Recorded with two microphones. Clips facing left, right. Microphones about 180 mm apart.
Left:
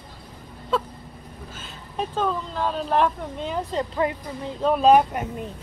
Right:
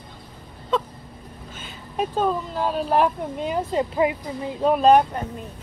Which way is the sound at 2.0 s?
10° right (ahead or behind).